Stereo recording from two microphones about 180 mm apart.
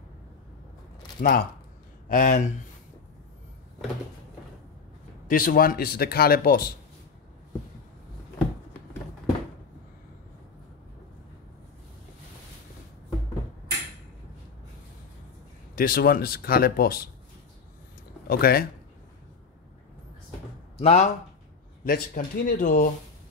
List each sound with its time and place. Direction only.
1.2 s speech: 50° left (ahead or behind)
5.3 s speech: 50° left (ahead or behind)
15.7 s speech: 55° left (ahead or behind)
18.2 s speech: 60° left (ahead or behind)
20.8 s speech: 35° left (ahead or behind)
21.8 s speech: 55° left (ahead or behind)